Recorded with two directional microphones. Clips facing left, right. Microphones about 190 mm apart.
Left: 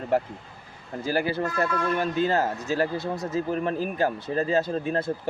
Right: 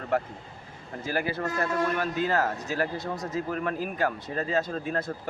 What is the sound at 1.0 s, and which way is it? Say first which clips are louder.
A man's voice: left 4 dB; 35° left (ahead or behind).